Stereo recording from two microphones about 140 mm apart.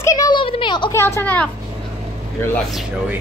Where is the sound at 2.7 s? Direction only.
Centre (ahead or behind).